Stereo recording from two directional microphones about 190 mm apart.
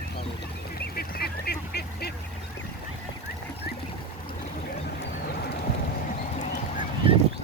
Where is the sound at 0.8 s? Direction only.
55° left (ahead or behind).